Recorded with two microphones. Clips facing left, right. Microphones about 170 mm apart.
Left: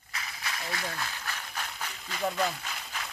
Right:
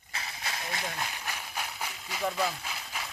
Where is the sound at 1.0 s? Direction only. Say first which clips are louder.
Even; 15° right (ahead or behind).